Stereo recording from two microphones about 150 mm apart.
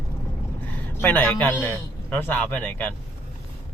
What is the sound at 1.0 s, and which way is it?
Speech, 10° left (ahead or behind).